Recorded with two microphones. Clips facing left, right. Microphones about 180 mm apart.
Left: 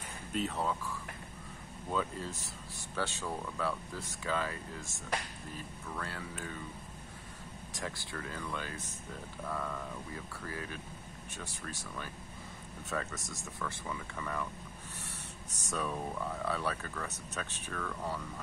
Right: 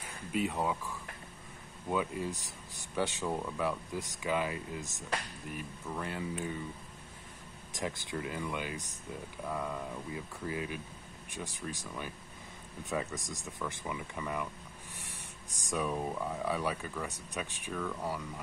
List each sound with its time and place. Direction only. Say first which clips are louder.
0.3 s speech: right 2 dB; 10° right (ahead or behind)
7.7 s speech: right 5 dB; 20° right (ahead or behind)